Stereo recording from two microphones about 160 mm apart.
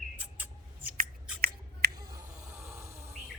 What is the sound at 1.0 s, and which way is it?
Finger snapping, 70° right (ahead or behind).